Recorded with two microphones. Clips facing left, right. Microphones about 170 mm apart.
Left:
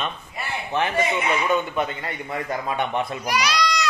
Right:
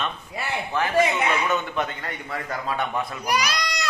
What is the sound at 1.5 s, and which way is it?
A man's voice, 10° left (ahead or behind).